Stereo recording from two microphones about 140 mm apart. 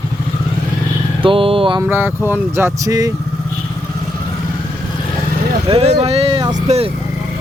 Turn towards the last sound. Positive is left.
turn(degrees=-50)  # may be behind; listen again after turning